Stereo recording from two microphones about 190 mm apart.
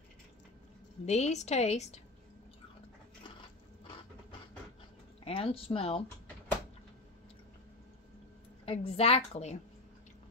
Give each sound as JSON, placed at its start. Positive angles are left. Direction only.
{"t": 1.0, "sound": "a woman's voice", "side_deg": 35}
{"t": 5.2, "sound": "speech", "side_deg": 30}
{"t": 8.6, "sound": "a woman's voice", "side_deg": 30}